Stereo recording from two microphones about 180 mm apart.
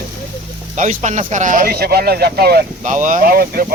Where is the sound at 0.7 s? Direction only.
40° right (ahead or behind); by 2.6 s 60° right (ahead or behind).